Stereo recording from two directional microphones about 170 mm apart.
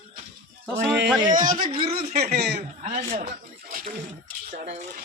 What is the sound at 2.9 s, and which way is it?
Speech, 50° right (ahead or behind).